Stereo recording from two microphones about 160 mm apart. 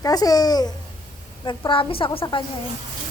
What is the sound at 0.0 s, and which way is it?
A child's voice, 25° left (ahead or behind).